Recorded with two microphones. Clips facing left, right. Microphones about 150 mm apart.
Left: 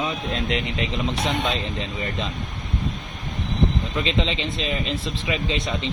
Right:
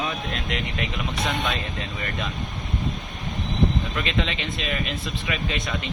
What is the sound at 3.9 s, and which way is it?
Speech, 25° left (ahead or behind).